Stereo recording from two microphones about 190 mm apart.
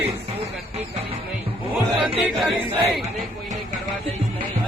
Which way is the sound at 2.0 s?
Centre (ahead or behind).